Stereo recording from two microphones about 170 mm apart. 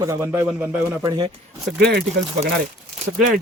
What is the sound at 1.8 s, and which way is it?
Speech, 75° right (ahead or behind).